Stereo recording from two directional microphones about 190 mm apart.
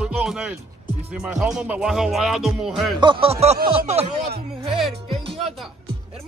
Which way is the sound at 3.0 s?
30° right (ahead or behind).